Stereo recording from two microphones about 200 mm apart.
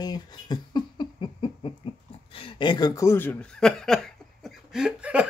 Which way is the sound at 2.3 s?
25° left (ahead or behind).